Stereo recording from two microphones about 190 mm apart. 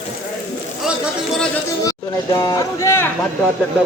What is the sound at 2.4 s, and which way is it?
Speech, 15° left (ahead or behind).